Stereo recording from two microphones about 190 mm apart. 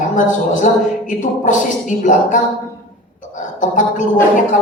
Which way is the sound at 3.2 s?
40° left (ahead or behind).